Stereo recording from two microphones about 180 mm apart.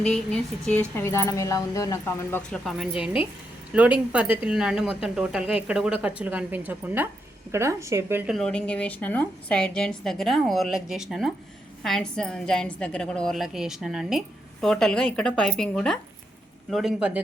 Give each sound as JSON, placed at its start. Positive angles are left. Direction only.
{"t": 0.0, "sound": "a woman's voice", "side_deg": 5}
{"t": 2.6, "sound": "a woman's voice", "side_deg": 0}
{"t": 2.9, "sound": "a woman's voice", "side_deg": 30}
{"t": 3.7, "sound": "speech", "side_deg": -5}
{"t": 8.3, "sound": "a woman's voice", "side_deg": 5}